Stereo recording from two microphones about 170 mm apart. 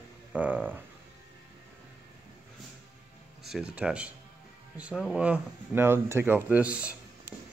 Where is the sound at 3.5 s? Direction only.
5° right (ahead or behind).